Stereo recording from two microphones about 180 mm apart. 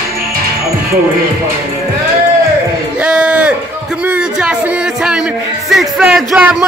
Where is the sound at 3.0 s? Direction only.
5° right (ahead or behind).